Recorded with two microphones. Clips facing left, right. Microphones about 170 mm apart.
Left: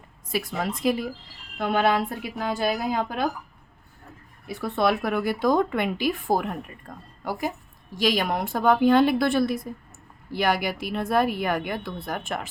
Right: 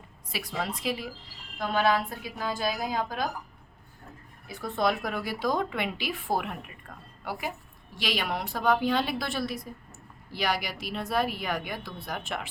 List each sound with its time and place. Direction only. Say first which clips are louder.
0.3 s speech: left 5 dB; 50° left (ahead or behind)
1.5 s speech: left 3 dB; 60° left (ahead or behind)
4.4 s speech: left 4 dB; 65° left (ahead or behind); by 12.5 s 45° left (ahead or behind)